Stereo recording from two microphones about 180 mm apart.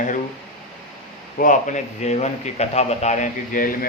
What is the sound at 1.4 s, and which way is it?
A man's voice, 45° left (ahead or behind).